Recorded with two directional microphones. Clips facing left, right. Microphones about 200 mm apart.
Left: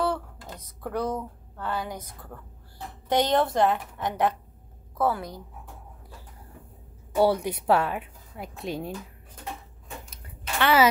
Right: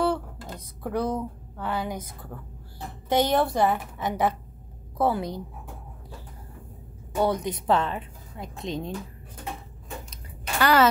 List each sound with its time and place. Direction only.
0.0 s a sound: 10° right (ahead or behind)
3.3 s a woman's voice: 5° right (ahead or behind)
4.9 s a woman's voice: 20° right (ahead or behind)
7.2 s a woman's voice: 10° left (ahead or behind)
10.6 s speech: centre (ahead or behind)